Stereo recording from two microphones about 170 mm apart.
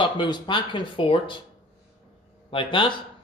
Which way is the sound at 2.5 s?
30° left (ahead or behind).